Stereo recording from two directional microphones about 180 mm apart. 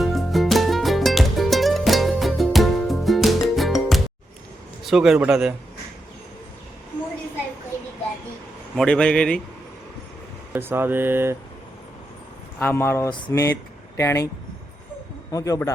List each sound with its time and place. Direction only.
0.0 s music: centre (ahead or behind)
4.8 s a man's voice: centre (ahead or behind)
8.7 s a man's voice: 5° left (ahead or behind)
10.5 s speech: 10° right (ahead or behind)
12.5 s speech: 15° left (ahead or behind)
15.3 s speech: 20° left (ahead or behind)